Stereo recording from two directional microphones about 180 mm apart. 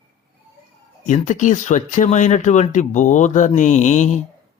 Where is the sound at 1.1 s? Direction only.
40° left (ahead or behind).